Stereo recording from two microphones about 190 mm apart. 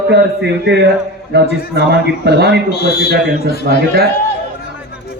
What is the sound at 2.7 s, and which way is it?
Speech, 60° left (ahead or behind).